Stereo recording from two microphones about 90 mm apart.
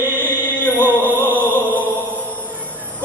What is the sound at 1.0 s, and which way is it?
Music, 20° right (ahead or behind).